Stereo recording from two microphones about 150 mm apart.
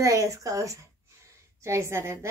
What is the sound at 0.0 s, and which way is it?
Speech, 20° right (ahead or behind).